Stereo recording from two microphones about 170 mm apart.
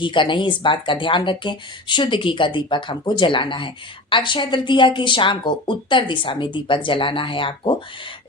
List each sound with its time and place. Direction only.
0.0 s speech: 30° left (ahead or behind)